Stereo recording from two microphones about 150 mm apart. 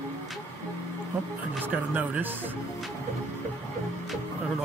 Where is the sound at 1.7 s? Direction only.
10° right (ahead or behind).